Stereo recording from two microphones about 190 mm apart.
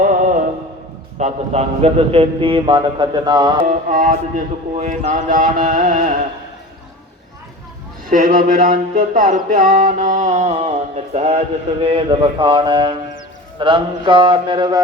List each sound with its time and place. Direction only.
1.2 s a man's voice: 35° right (ahead or behind)
3.7 s speech: 45° right (ahead or behind)
8.1 s music: 45° right (ahead or behind); by 13.0 s 25° right (ahead or behind)
13.6 s a man's voice: 25° right (ahead or behind)